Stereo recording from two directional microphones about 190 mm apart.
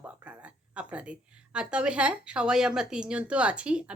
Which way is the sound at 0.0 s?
5° right (ahead or behind).